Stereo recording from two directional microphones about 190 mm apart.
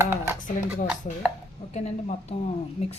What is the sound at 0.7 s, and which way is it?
Chopping, 5° right (ahead or behind).